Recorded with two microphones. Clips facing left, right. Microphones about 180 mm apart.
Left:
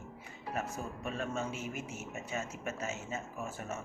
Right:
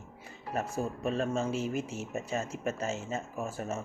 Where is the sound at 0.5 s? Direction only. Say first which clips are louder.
Right 6 dB; 30° right (ahead or behind).